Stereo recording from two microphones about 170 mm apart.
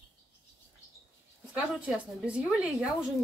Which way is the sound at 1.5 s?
5° right (ahead or behind).